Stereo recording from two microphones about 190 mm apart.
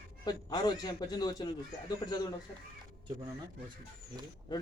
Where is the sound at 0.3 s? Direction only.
20° left (ahead or behind).